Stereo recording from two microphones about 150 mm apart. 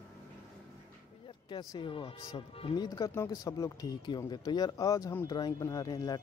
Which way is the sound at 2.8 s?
25° left (ahead or behind).